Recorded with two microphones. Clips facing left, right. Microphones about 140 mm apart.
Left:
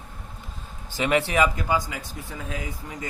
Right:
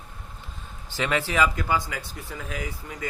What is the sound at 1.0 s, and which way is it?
A man's voice, 20° left (ahead or behind).